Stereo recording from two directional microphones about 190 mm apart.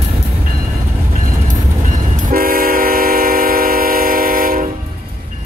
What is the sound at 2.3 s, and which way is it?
Train, 50° right (ahead or behind).